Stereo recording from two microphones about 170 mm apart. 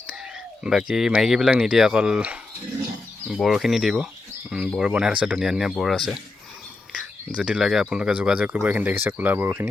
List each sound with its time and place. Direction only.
0.6 s speech: 5° right (ahead or behind)